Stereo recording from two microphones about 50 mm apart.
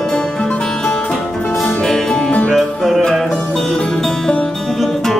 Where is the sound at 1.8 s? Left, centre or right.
Centre.